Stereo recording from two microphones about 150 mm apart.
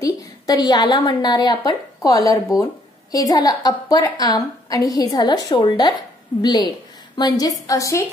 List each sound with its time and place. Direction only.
0.0 s a woman's voice: 25° left (ahead or behind)